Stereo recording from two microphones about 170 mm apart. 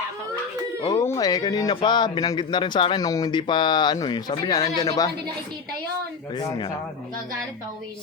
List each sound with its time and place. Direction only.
0.9 s a man's voice: 20° left (ahead or behind)
6.3 s a man's voice: 25° left (ahead or behind)